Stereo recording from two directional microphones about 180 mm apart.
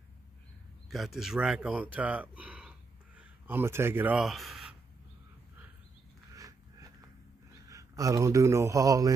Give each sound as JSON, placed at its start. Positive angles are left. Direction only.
{"t": 0.8, "sound": "speech", "side_deg": 0}
{"t": 6.3, "sound": "biting", "side_deg": -20}
{"t": 7.6, "sound": "a man's voice", "side_deg": -20}